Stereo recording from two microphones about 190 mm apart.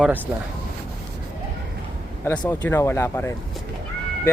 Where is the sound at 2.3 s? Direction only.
10° left (ahead or behind).